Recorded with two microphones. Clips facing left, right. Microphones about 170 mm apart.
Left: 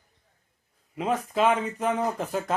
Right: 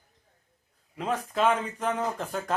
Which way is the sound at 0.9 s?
10° left (ahead or behind).